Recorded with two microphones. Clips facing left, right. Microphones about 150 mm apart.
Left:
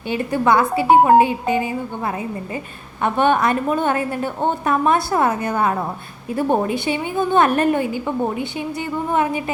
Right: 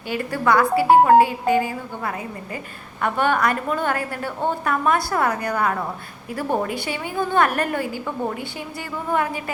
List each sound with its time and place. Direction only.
0.1 s a woman's voice: 20° left (ahead or behind)